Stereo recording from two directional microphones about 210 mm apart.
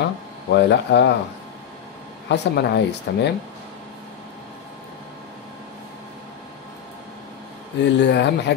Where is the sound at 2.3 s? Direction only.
55° left (ahead or behind).